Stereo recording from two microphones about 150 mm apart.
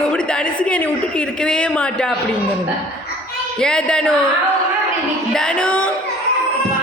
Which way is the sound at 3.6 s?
5° left (ahead or behind).